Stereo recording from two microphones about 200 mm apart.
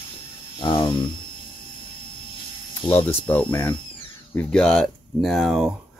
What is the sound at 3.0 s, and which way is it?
Speech, 10° left (ahead or behind).